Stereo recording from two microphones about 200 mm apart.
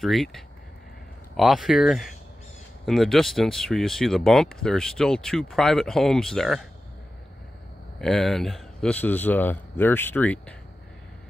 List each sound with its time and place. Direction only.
0.0 s speech: centre (ahead or behind)
8.0 s speech: centre (ahead or behind)